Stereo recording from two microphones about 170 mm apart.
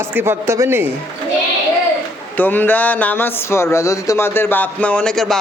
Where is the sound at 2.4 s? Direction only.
10° left (ahead or behind).